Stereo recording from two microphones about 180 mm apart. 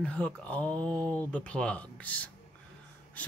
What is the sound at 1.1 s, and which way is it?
Speech, 5° left (ahead or behind).